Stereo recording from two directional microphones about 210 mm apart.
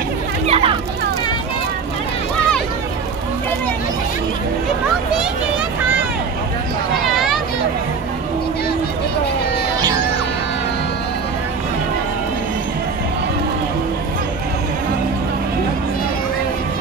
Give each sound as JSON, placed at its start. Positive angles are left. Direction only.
{"t": 0.5, "sound": "children playing", "side_deg": -25}